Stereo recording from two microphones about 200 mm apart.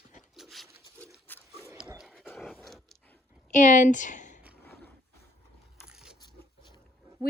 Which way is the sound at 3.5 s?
40° left (ahead or behind).